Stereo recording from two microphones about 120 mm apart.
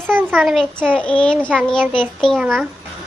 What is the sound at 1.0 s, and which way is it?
Speech, 10° left (ahead or behind).